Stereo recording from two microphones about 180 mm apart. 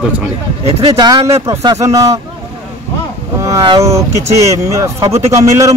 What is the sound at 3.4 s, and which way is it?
Speech, 20° right (ahead or behind).